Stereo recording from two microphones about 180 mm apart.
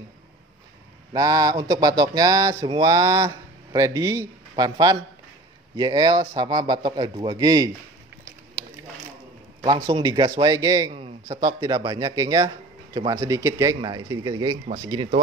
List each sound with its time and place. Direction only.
1.1 s speech: 20° right (ahead or behind)
9.8 s speech: 25° right (ahead or behind)